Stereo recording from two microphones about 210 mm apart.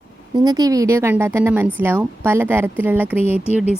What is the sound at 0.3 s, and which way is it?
A woman's voice, 20° right (ahead or behind).